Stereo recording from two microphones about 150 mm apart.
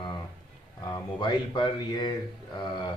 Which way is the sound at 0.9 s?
30° left (ahead or behind).